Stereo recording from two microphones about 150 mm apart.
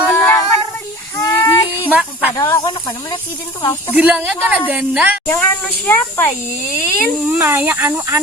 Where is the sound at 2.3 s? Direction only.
25° left (ahead or behind).